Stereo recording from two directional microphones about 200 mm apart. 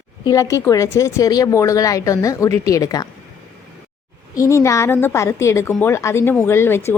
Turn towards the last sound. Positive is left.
turn(degrees=10)  # may be behind; listen again after turning